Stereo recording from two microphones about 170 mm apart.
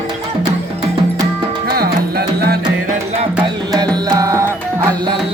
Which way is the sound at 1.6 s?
65° right (ahead or behind).